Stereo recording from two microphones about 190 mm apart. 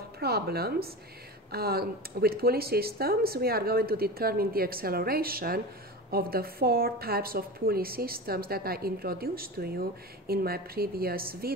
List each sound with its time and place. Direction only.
0.2 s a woman's voice: 55° right (ahead or behind)